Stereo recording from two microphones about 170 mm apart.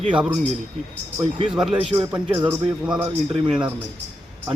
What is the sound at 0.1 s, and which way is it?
Speech, 5° right (ahead or behind).